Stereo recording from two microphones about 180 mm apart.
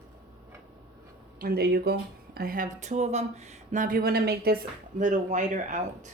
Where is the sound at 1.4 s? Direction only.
60° right (ahead or behind); by 6.1 s 40° right (ahead or behind).